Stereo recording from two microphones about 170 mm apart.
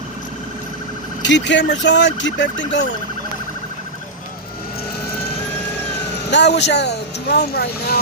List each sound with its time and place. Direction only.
1.2 s speech: 90° left
6.3 s speech: 90° left; by 7.9 s 65° left (ahead or behind)